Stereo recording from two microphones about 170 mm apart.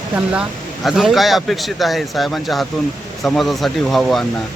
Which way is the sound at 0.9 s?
Centre (ahead or behind).